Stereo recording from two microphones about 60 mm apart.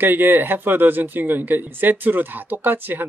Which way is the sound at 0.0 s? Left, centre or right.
Right.